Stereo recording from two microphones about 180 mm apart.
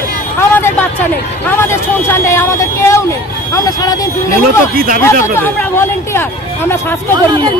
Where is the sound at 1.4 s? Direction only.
10° left (ahead or behind).